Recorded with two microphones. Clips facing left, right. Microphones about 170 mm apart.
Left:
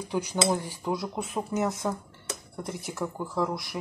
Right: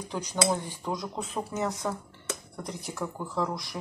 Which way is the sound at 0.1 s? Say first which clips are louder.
Left 2 dB; 15° left (ahead or behind).